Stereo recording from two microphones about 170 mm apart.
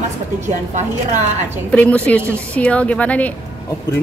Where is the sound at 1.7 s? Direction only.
10° left (ahead or behind).